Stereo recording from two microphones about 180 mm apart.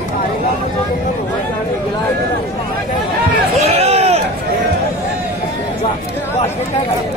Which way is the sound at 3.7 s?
35° right (ahead or behind).